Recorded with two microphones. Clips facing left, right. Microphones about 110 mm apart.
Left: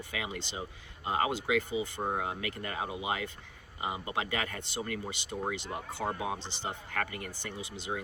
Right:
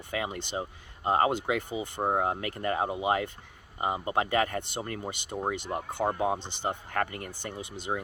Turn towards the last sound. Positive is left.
turn(degrees=-50)  # may be behind; listen again after turning